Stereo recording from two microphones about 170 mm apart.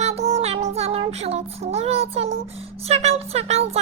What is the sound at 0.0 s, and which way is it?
Child singing, 40° right (ahead or behind).